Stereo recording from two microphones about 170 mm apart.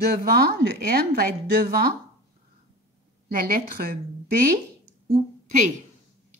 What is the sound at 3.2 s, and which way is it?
Speech, 60° right (ahead or behind).